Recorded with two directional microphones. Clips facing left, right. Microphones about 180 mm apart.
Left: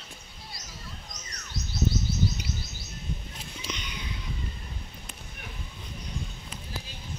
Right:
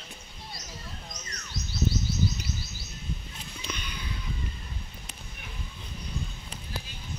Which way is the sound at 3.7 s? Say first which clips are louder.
Even; 15° left (ahead or behind).